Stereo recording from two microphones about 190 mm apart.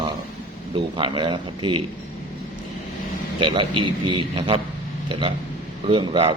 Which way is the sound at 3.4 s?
25° right (ahead or behind).